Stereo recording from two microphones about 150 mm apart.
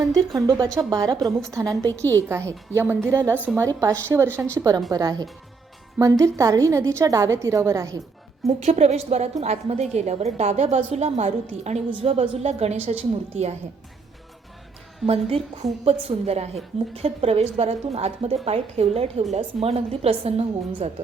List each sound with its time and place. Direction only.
0.0 s a woman's voice: 25° right (ahead or behind)
8.4 s a woman's voice: 45° right (ahead or behind)
15.0 s a woman's voice: 40° right (ahead or behind)